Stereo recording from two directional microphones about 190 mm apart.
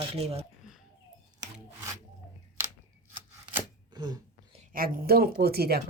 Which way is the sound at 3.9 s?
20° right (ahead or behind).